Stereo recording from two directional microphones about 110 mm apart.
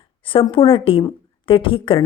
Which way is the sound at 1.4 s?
55° left (ahead or behind).